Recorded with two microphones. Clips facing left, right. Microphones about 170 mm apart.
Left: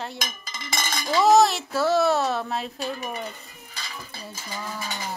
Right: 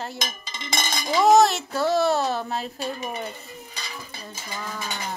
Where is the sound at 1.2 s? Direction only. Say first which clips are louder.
Right 1 dB; centre (ahead or behind).